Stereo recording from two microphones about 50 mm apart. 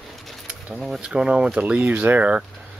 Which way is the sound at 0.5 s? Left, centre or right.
Centre.